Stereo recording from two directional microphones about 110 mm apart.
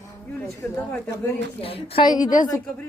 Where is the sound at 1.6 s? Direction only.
60° left (ahead or behind).